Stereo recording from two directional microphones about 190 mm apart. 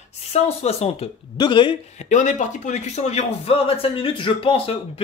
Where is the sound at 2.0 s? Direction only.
40° left (ahead or behind).